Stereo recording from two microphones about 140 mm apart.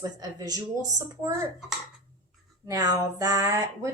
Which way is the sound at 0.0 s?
25° right (ahead or behind).